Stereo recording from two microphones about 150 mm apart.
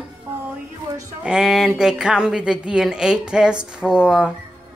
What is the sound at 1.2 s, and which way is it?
Speech, 5° right (ahead or behind).